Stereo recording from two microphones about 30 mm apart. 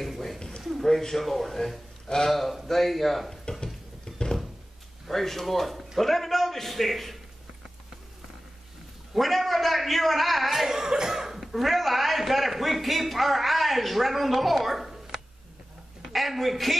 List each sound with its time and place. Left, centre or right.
0.7 s a man's voice: centre
3.6 s a sound: left
5.0 s a man's voice: centre
9.1 s a man's voice: centre